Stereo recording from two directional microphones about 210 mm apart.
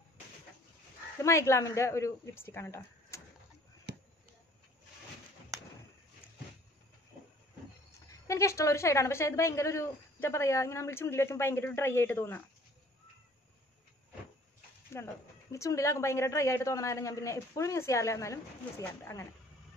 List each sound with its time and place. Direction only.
1.2 s a woman's voice: 15° left (ahead or behind)
3.9 s basketball bounce: 50° right (ahead or behind)
8.1 s a woman's voice: 15° left (ahead or behind)
14.9 s a woman's voice: 15° left (ahead or behind)